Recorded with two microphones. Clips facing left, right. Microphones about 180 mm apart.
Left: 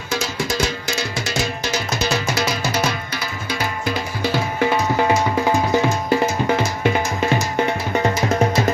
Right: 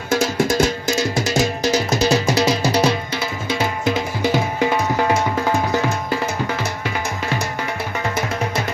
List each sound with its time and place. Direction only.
0.1 s music: 50° right (ahead or behind); by 2.9 s 35° right (ahead or behind)
3.5 s music: 20° right (ahead or behind)
5.5 s music: 15° left (ahead or behind)